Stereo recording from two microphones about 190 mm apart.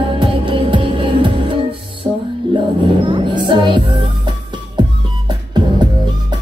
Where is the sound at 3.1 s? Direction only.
25° right (ahead or behind).